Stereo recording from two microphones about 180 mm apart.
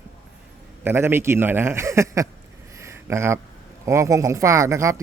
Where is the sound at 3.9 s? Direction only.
15° right (ahead or behind).